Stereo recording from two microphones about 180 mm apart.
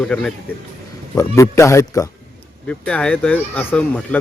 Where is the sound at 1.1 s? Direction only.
15° left (ahead or behind).